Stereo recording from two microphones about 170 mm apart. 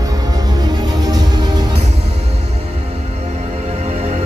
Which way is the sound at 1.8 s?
40° right (ahead or behind).